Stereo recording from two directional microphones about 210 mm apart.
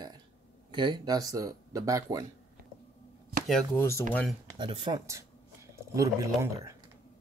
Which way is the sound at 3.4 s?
5° left (ahead or behind).